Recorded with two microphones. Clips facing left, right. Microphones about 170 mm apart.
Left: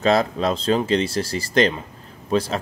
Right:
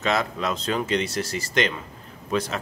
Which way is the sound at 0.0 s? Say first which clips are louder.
Left 6 dB; 35° left (ahead or behind).